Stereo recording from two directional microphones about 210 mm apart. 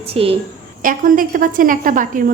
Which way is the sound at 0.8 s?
40° right (ahead or behind).